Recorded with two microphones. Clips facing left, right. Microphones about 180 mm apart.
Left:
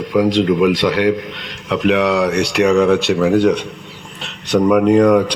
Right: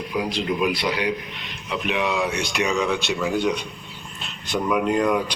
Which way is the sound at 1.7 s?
90° left.